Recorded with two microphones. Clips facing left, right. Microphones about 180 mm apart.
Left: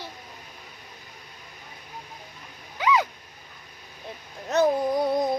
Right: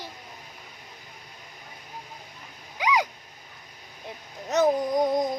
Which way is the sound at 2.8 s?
15° right (ahead or behind).